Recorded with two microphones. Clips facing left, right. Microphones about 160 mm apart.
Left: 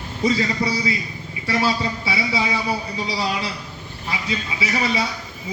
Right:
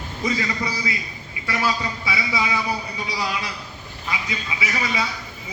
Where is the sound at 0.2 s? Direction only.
30° left (ahead or behind).